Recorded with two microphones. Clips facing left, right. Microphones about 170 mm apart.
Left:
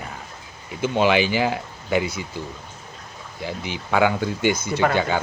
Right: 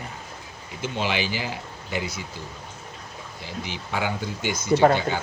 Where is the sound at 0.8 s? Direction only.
55° left (ahead or behind).